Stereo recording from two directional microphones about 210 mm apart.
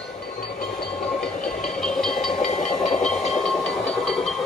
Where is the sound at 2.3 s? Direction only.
35° left (ahead or behind).